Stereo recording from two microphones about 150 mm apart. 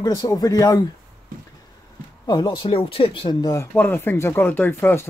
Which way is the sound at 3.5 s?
15° left (ahead or behind).